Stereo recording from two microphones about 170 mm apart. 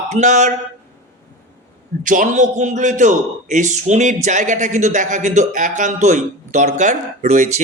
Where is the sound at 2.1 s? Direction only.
50° right (ahead or behind).